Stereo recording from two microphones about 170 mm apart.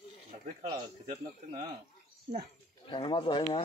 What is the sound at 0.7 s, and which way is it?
Speech, 50° right (ahead or behind).